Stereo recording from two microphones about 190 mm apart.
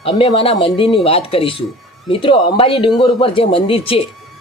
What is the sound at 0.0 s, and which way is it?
A man's voice, 30° left (ahead or behind).